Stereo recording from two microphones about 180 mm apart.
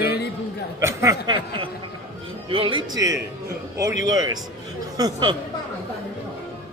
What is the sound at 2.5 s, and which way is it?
Speech, 30° right (ahead or behind).